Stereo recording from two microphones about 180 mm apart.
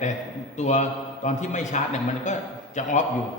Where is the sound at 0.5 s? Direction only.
40° left (ahead or behind).